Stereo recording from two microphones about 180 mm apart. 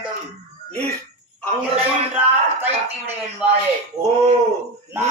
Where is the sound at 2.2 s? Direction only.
10° right (ahead or behind).